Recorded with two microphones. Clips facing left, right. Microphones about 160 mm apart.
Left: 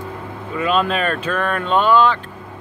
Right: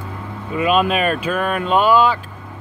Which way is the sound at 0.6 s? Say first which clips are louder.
Right 2 dB; 15° right (ahead or behind).